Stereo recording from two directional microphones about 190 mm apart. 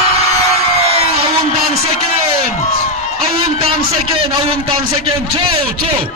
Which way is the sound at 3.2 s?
30° right (ahead or behind).